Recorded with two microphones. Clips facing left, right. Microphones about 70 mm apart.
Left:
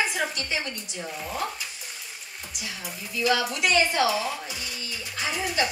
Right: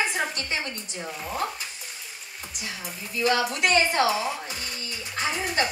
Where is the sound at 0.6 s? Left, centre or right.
Centre.